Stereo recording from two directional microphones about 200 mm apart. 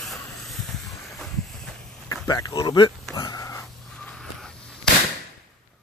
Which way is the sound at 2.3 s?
15° left (ahead or behind).